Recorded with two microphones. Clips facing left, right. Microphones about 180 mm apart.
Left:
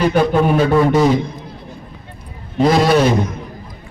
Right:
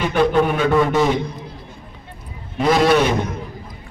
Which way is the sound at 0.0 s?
35° left (ahead or behind).